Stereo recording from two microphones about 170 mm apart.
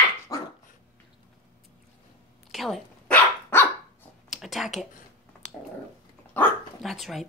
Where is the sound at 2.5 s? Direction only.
Centre (ahead or behind).